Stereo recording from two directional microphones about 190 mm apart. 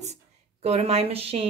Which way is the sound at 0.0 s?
35° right (ahead or behind).